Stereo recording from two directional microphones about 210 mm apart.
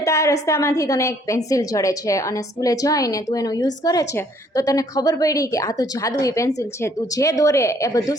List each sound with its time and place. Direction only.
0.0 s a woman's voice: 15° left (ahead or behind)